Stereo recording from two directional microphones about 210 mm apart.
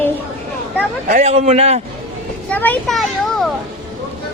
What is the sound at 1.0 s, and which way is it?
Speech, 35° right (ahead or behind).